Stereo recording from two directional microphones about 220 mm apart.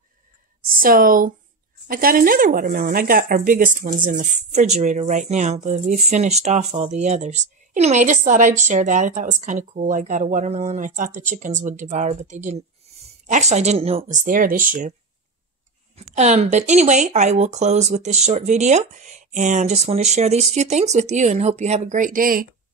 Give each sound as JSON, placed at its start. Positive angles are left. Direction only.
{"t": 0.7, "sound": "speech", "side_deg": -40}
{"t": 16.2, "sound": "speech", "side_deg": -30}